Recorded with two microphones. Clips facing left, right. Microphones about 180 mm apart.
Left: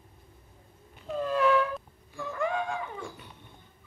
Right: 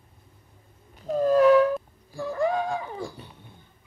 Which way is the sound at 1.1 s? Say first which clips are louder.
Right 8 dB; 40° right (ahead or behind).